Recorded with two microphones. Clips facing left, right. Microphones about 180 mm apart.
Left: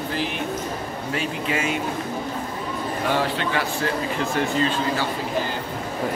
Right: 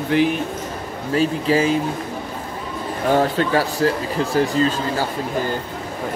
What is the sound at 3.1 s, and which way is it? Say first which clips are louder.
Speech: right 8 dB; 40° right (ahead or behind).